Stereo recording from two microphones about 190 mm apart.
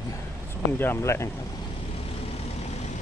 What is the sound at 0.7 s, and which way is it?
Speech, 10° left (ahead or behind).